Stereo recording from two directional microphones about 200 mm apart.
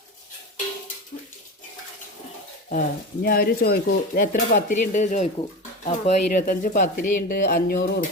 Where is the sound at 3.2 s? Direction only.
45° left (ahead or behind).